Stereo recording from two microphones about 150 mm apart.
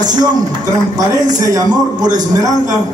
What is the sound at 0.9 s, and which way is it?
A man's voice, 25° right (ahead or behind).